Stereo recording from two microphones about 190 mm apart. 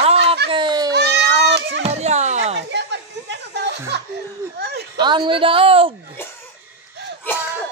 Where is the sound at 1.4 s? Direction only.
65° right (ahead or behind).